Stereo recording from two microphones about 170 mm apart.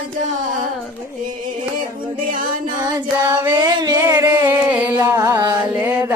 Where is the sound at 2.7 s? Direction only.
25° right (ahead or behind).